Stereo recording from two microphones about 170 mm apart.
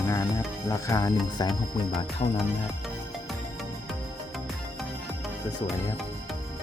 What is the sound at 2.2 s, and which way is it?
Music, 35° left (ahead or behind).